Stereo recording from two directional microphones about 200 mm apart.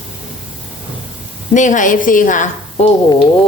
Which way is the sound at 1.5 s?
40° left (ahead or behind).